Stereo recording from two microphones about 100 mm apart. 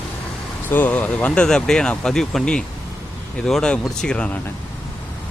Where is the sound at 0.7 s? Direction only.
15° left (ahead or behind).